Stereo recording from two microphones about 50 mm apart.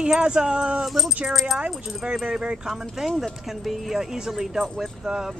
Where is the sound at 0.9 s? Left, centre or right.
Centre.